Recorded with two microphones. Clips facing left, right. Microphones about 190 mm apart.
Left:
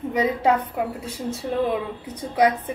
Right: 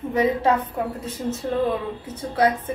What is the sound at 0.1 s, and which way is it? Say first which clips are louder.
A woman's voice: right 1 dB; 15° left (ahead or behind).